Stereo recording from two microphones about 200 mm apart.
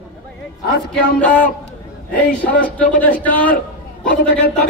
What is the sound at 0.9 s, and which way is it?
Speech, 10° left (ahead or behind).